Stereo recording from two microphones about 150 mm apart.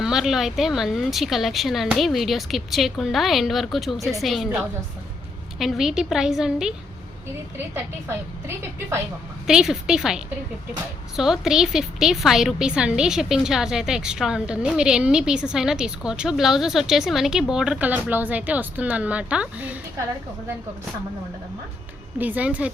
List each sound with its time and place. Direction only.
0.0 s speech: 5° right (ahead or behind)
9.5 s speech: 5° right (ahead or behind)
11.2 s speech: 5° right (ahead or behind)
22.2 s speech: 10° right (ahead or behind)